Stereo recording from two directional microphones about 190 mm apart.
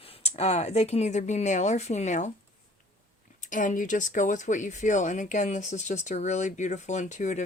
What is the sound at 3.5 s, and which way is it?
Speech, 45° left (ahead or behind).